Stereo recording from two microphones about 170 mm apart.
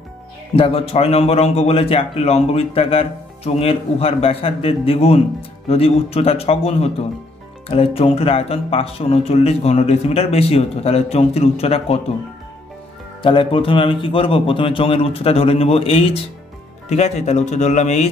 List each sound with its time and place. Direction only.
0.6 s a man's voice: 35° left (ahead or behind)
13.2 s a man's voice: 30° left (ahead or behind)